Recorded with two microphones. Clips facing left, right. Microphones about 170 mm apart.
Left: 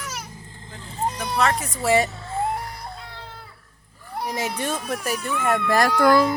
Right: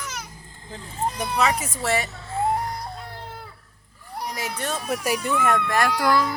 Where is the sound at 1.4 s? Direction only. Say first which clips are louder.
Left 1 dB; centre (ahead or behind).